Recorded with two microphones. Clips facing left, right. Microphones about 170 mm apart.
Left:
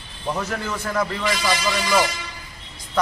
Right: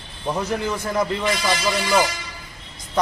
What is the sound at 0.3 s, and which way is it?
Speech, 15° right (ahead or behind).